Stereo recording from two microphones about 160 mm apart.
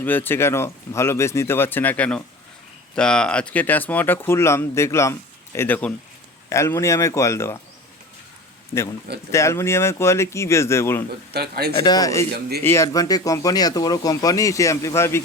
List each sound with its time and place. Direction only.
0.0 s speech: 10° left (ahead or behind)
9.3 s speech: 15° left (ahead or behind)
11.3 s speech: 85° right
11.8 s speech: 25° left (ahead or behind)